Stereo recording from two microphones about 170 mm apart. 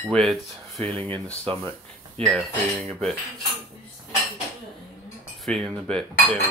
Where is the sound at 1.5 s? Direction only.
30° right (ahead or behind).